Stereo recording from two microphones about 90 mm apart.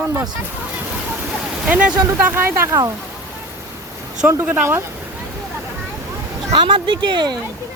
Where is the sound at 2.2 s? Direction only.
25° right (ahead or behind).